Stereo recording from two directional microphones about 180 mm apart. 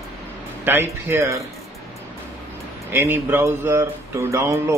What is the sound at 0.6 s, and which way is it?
Speech, 15° right (ahead or behind).